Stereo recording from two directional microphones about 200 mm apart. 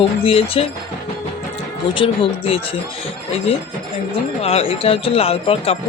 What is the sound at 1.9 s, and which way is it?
Speech, 25° left (ahead or behind).